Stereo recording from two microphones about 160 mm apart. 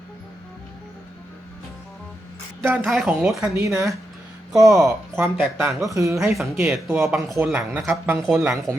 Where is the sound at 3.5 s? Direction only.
20° right (ahead or behind).